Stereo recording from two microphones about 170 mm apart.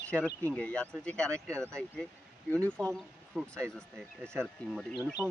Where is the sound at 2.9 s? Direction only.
Centre (ahead or behind).